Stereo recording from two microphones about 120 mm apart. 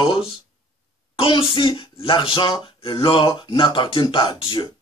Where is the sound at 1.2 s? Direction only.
45° left (ahead or behind).